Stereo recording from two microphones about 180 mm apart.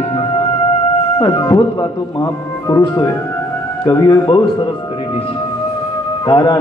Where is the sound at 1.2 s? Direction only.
25° left (ahead or behind).